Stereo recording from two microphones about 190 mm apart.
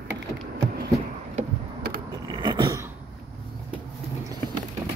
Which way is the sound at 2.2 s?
25° right (ahead or behind).